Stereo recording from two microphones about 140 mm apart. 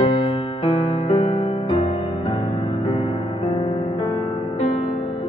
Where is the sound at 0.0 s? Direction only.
40° left (ahead or behind).